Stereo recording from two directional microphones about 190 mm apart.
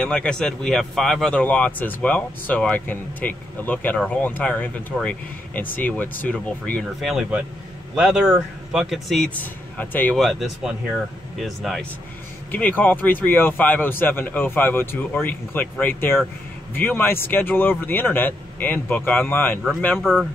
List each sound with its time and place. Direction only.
0.0 s a man's voice: 5° left (ahead or behind)
20.0 s a man's voice: 5° right (ahead or behind)